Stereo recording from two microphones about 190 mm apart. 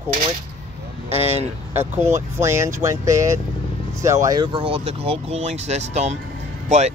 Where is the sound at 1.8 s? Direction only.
15° right (ahead or behind).